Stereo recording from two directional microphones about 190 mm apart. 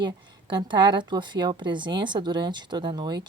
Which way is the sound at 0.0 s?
25° right (ahead or behind).